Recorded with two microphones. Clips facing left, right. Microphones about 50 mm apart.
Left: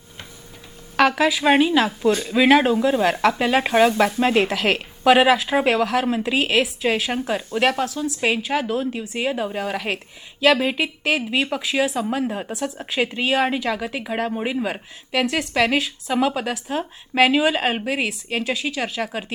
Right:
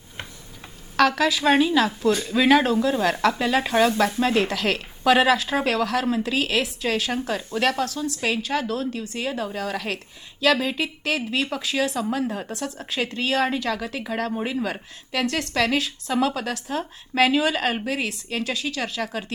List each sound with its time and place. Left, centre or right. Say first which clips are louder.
0.9 s speech: left 2 dB; centre